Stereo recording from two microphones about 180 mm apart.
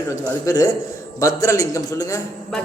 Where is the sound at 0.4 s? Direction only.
20° left (ahead or behind).